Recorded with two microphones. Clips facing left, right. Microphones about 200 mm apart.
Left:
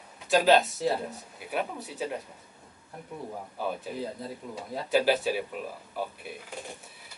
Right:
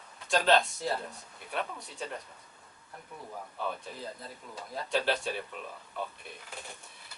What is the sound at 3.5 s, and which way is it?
Speech, 10° left (ahead or behind).